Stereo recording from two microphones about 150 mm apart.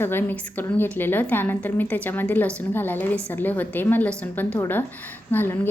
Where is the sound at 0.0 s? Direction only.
15° left (ahead or behind).